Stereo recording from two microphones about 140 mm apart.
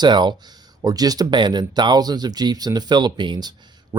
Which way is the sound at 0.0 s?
30° right (ahead or behind).